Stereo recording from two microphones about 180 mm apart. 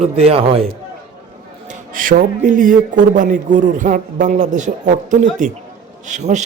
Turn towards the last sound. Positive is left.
turn(degrees=-40)  # may be behind; listen again after turning